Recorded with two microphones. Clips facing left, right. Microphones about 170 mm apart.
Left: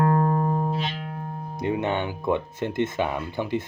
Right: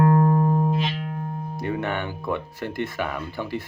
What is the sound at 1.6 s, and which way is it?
Speech, 20° left (ahead or behind).